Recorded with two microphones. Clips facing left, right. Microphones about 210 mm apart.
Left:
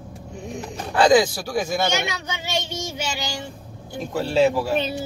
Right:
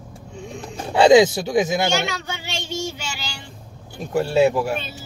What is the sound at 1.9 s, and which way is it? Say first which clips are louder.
A child's voice: right 2 dB; 20° left (ahead or behind).